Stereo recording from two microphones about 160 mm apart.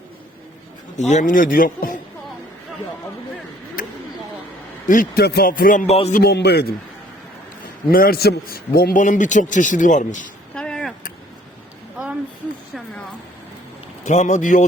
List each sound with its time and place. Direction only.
0.9 s a man's voice: 45° left (ahead or behind)
3.8 s a sound: 60° left (ahead or behind)
4.9 s a man's voice: 55° left (ahead or behind)
5.2 s a man's voice: 80° left; by 5.8 s 60° left (ahead or behind)
5.9 s music: 40° left (ahead or behind)
6.1 s a man's voice: 85° left
7.9 s a man's voice: 65° left (ahead or behind)
9.0 s a man's voice: 50° left (ahead or behind)
10.5 s a sound: 5° left (ahead or behind)
14.0 s a man's voice: 50° left (ahead or behind)